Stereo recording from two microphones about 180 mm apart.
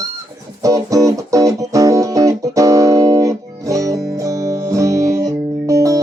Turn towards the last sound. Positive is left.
turn(degrees=-20)  # may be behind; listen again after turning